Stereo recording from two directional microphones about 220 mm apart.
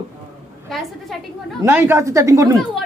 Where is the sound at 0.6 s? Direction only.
Centre (ahead or behind).